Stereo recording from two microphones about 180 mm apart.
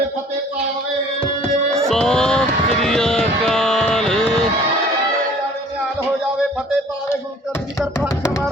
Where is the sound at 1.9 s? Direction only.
5° left (ahead or behind).